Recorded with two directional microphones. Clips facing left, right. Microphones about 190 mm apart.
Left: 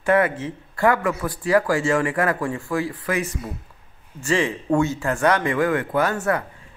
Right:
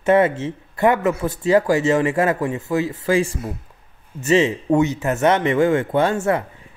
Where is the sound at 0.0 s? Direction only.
25° right (ahead or behind).